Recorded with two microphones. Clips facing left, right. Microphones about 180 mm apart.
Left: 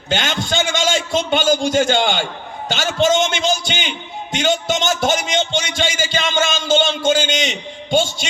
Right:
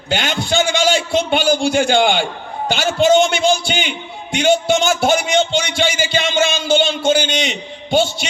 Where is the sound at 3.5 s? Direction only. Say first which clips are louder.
Right 4 dB; 45° left (ahead or behind).